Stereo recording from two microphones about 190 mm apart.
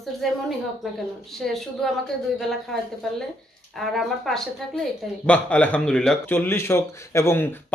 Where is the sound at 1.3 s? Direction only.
Centre (ahead or behind).